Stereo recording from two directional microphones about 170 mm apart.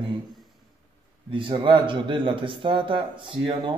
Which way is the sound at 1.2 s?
30° right (ahead or behind).